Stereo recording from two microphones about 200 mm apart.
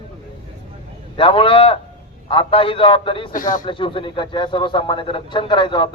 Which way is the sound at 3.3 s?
40° left (ahead or behind).